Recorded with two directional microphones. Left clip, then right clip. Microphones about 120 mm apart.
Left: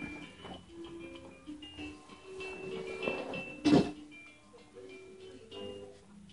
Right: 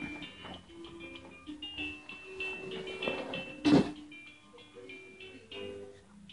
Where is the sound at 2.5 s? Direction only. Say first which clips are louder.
Right 1 dB; centre (ahead or behind).